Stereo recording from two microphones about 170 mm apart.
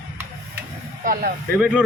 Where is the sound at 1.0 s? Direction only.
55° right (ahead or behind).